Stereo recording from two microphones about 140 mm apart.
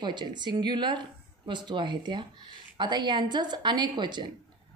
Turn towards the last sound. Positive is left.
turn(degrees=-30)  # may be behind; listen again after turning